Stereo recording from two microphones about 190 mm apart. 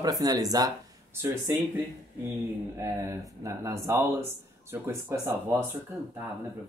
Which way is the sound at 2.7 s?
15° right (ahead or behind).